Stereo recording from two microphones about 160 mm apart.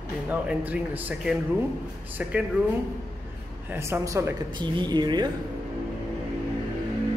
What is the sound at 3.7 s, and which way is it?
Speech, 15° right (ahead or behind).